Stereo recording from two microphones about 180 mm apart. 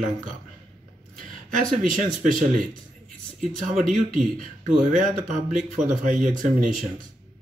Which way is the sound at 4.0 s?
45° right (ahead or behind).